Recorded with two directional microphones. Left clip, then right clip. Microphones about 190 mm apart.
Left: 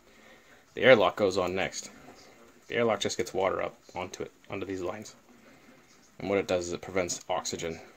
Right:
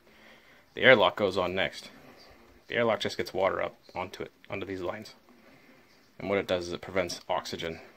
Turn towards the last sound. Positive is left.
turn(degrees=10)  # may be behind; listen again after turning